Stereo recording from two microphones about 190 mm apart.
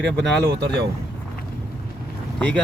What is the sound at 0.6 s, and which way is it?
Speech, 65° right (ahead or behind).